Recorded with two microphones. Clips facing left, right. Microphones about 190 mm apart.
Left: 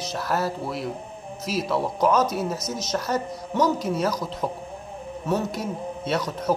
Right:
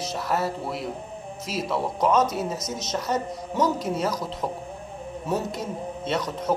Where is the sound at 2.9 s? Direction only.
Centre (ahead or behind).